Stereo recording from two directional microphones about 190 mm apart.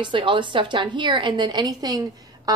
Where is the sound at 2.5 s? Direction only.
20° right (ahead or behind).